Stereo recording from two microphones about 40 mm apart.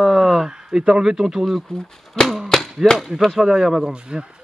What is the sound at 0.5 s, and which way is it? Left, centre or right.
Speech, centre.